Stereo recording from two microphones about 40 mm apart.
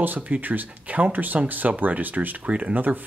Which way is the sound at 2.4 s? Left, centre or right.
Right.